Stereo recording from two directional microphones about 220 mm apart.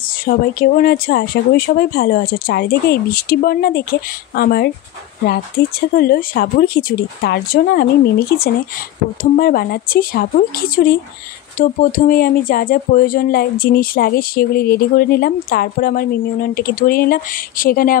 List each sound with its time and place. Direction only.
0.2 s speech: 40° left (ahead or behind)
9.2 s speech: 40° left (ahead or behind)